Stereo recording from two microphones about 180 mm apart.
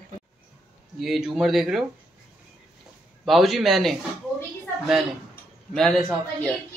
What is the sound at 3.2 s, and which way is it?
Speech, centre (ahead or behind).